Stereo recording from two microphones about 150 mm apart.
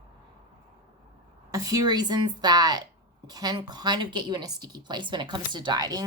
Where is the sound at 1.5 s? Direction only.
25° right (ahead or behind).